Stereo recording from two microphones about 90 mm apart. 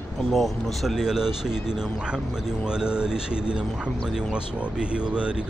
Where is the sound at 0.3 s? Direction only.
Centre (ahead or behind).